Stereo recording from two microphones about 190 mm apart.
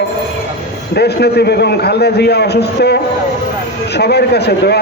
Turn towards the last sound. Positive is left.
turn(degrees=60)  # may be behind; listen again after turning